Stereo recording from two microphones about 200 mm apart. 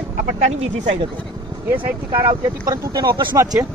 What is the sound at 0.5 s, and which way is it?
Speech, 30° right (ahead or behind).